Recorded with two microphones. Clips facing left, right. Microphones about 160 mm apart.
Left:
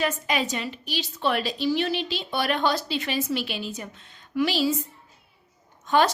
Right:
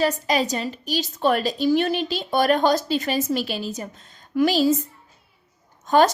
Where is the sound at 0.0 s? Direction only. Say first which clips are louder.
Right 5 dB; 35° right (ahead or behind).